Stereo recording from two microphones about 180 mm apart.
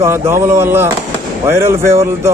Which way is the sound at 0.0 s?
15° right (ahead or behind).